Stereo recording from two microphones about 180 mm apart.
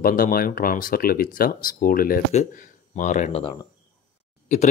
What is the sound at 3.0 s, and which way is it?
Speech, 45° left (ahead or behind).